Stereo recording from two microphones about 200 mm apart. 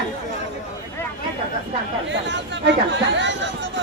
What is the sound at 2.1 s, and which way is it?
Speech, 65° right (ahead or behind).